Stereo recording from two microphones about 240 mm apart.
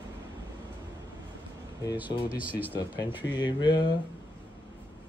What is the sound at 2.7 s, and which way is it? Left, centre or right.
Speech, centre.